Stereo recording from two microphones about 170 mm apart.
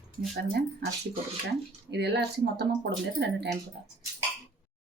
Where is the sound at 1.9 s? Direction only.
75° right (ahead or behind).